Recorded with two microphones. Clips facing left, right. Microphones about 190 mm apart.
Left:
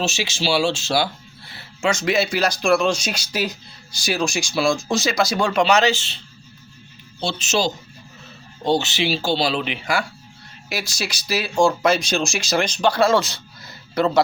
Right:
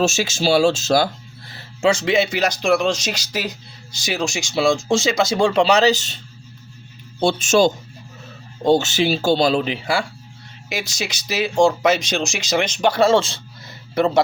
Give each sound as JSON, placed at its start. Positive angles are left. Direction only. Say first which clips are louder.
{"t": 0.0, "sound": "speech", "louder": "right 5 dB", "side_deg": -45}